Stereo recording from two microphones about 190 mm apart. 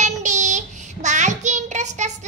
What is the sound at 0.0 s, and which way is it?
Child singing, 40° right (ahead or behind).